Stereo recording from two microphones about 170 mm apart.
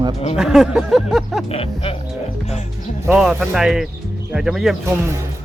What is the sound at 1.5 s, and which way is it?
Speech, 35° left (ahead or behind).